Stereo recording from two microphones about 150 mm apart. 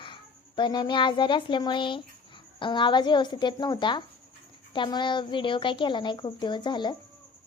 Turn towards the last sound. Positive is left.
turn(degrees=30)  # may be behind; listen again after turning